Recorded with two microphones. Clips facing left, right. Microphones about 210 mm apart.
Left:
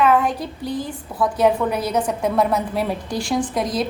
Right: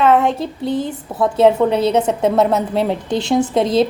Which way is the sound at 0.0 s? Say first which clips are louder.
Right 3 dB; 25° right (ahead or behind).